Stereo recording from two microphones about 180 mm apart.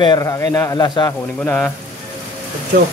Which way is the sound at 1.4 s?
10° left (ahead or behind).